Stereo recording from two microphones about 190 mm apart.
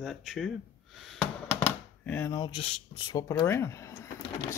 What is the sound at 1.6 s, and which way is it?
Speech, 10° left (ahead or behind).